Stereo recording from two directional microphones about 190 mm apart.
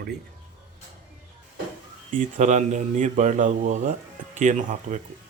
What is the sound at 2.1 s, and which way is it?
Speech, 40° right (ahead or behind).